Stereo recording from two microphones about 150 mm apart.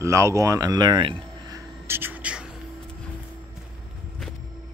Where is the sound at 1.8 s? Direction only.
15° right (ahead or behind).